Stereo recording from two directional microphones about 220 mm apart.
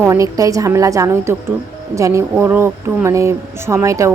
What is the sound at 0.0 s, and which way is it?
A woman's voice, 15° right (ahead or behind).